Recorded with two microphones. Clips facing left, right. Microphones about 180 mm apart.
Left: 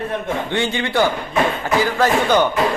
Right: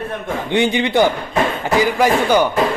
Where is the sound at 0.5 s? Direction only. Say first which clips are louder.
Right 6 dB; 15° right (ahead or behind).